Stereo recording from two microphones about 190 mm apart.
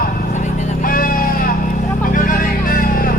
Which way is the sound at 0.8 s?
45° left (ahead or behind).